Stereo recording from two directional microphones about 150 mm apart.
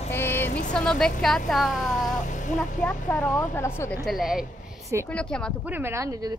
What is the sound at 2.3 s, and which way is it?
Vehicle, 55° left (ahead or behind).